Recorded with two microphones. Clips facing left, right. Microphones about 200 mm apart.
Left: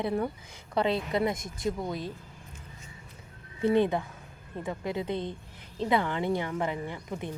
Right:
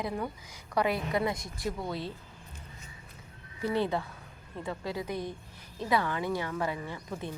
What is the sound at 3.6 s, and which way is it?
A woman's voice, 20° left (ahead or behind).